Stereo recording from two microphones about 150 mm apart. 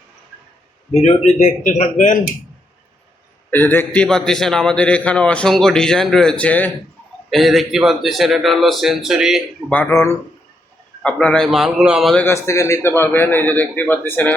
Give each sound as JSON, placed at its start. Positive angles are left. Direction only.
{"t": 0.9, "sound": "speech", "side_deg": 45}
{"t": 3.5, "sound": "a man's voice", "side_deg": 15}
{"t": 9.6, "sound": "a man's voice", "side_deg": 10}
{"t": 11.0, "sound": "a man's voice", "side_deg": 5}
{"t": 12.1, "sound": "a man's voice", "side_deg": 15}